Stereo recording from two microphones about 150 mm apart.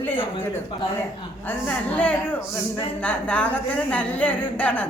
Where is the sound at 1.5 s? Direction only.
10° left (ahead or behind).